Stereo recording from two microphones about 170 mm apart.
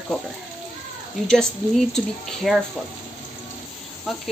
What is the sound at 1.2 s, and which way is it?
Speech, 5° left (ahead or behind).